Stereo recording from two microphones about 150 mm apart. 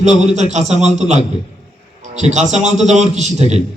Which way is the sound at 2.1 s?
50° right (ahead or behind).